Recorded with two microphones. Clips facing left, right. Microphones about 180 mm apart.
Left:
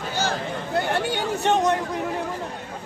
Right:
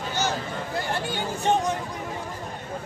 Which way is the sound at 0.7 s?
65° left (ahead or behind).